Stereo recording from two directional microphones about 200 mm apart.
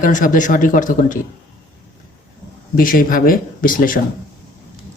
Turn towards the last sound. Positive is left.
turn(degrees=45)  # may be behind; listen again after turning